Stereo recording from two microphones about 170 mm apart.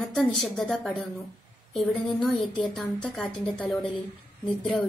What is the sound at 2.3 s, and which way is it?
Speech, 30° left (ahead or behind).